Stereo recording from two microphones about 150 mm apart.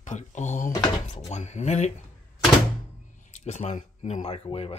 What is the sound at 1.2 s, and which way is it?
Speech, 50° left (ahead or behind).